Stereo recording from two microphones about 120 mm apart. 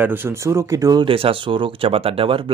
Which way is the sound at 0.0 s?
20° right (ahead or behind).